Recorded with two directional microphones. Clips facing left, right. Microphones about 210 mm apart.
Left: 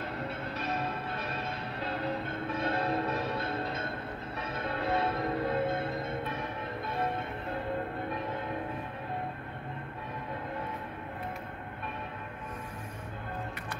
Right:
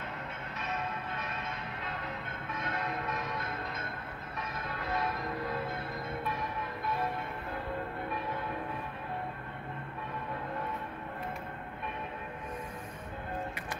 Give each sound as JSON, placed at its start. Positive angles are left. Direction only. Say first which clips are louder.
{"t": 0.6, "sound": "change ringing", "louder": "left 2 dB", "side_deg": 35}